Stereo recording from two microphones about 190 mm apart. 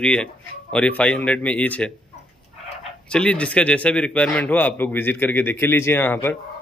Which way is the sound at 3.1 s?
5° left (ahead or behind).